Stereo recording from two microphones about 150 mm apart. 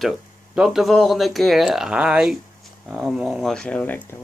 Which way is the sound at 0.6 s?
5° right (ahead or behind).